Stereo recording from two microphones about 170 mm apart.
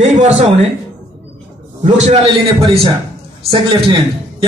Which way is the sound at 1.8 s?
40° right (ahead or behind).